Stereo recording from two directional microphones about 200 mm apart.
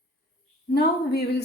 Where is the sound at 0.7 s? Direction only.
55° left (ahead or behind).